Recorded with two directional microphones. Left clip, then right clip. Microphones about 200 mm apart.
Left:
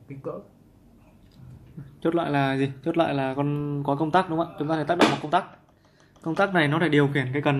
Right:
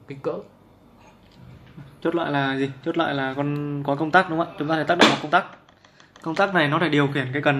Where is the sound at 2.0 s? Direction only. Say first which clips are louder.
Right 1 dB; 25° left (ahead or behind); by 5.5 s 5° left (ahead or behind).